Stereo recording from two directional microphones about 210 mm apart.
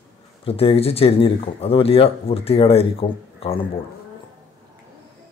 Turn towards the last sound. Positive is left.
turn(degrees=30)  # may be behind; listen again after turning